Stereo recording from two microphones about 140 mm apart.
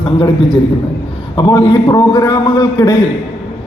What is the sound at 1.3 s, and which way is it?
A man's voice, 25° left (ahead or behind).